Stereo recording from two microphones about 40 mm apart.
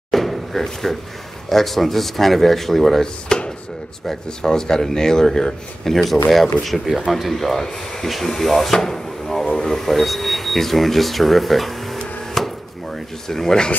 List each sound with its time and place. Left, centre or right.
0.1 s drawer open or close: centre
1.5 s speech: centre
3.3 s chopping: centre
4.1 s speech: centre
12.4 s chop: centre
13.3 s speech: centre